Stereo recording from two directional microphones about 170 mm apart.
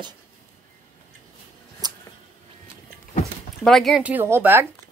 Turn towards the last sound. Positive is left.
turn(degrees=-15)  # may be behind; listen again after turning